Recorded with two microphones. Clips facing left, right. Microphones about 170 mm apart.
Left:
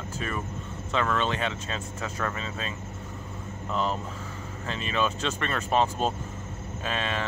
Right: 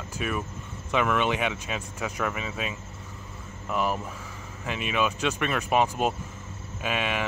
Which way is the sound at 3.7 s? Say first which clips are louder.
Right 1 dB; 10° right (ahead or behind).